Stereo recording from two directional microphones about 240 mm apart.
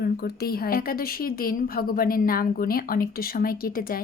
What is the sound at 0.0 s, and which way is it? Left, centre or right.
A woman's voice, left.